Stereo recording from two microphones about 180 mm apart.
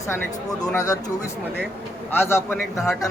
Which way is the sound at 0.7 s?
15° left (ahead or behind).